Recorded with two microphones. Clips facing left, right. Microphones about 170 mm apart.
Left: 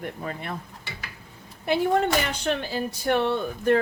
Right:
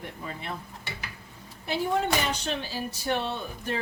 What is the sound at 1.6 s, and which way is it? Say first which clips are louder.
Speech: left 5 dB; 55° left (ahead or behind).